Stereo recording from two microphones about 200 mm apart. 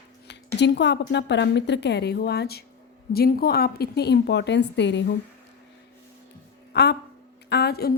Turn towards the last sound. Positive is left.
turn(degrees=55)  # may be behind; listen again after turning